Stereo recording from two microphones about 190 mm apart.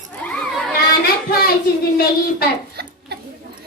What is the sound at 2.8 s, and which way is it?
Tick-tock, 55° right (ahead or behind).